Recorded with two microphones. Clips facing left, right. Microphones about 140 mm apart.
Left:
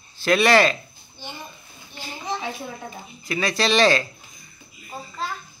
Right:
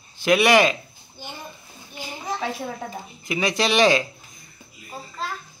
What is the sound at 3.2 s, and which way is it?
Speech, 20° right (ahead or behind).